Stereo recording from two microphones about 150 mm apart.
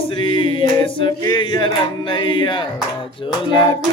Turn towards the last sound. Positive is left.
turn(degrees=35)  # may be behind; listen again after turning